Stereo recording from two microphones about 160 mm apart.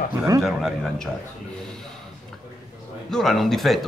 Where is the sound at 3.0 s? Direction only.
Centre (ahead or behind).